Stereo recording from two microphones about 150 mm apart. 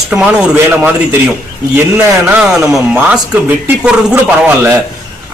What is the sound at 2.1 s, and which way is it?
A man's voice, 20° right (ahead or behind).